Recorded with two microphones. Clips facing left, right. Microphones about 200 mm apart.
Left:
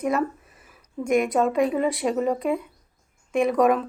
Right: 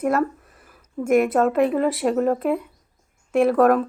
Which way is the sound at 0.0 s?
5° right (ahead or behind).